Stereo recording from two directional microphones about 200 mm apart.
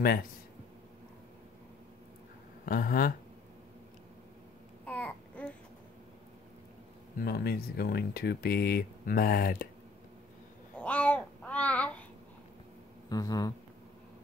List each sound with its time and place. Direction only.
2.6 s speech: 45° left (ahead or behind)
4.8 s babbling: 5° left (ahead or behind)
7.2 s speech: 50° left (ahead or behind)
10.8 s babbling: 5° left (ahead or behind)
13.1 s speech: 20° left (ahead or behind)